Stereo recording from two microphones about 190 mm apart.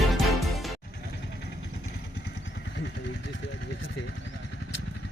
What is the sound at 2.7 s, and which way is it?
Vehicle, 70° left (ahead or behind).